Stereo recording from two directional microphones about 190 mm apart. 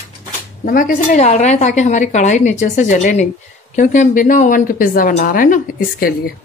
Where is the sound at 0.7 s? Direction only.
45° left (ahead or behind).